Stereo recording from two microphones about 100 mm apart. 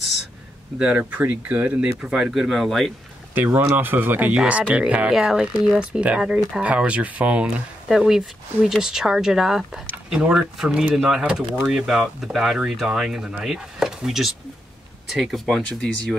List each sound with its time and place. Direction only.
0.7 s speech: 10° right (ahead or behind)
3.3 s speech: 20° right (ahead or behind); by 16.2 s 5° left (ahead or behind)